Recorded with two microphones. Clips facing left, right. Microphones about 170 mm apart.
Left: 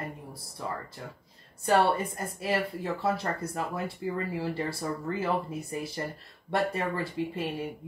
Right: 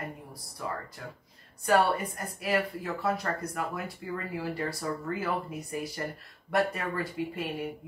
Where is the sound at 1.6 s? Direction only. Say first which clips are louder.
Left 1 dB; 30° left (ahead or behind).